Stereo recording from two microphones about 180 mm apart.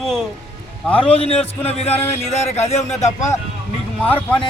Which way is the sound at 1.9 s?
15° left (ahead or behind).